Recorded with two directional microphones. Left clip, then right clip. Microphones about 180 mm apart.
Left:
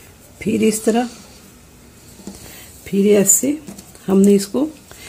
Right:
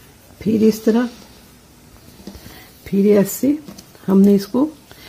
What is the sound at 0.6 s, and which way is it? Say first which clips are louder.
Speech: right 1 dB; 50° right (ahead or behind).